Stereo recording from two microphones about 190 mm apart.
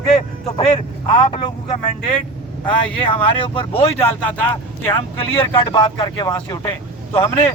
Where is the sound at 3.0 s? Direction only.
30° left (ahead or behind).